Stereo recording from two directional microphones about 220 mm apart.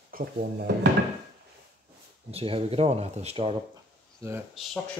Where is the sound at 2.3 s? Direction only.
25° right (ahead or behind).